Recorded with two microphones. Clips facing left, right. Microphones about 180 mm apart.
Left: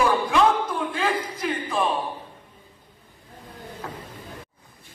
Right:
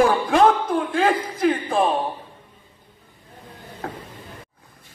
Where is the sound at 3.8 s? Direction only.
60° right (ahead or behind).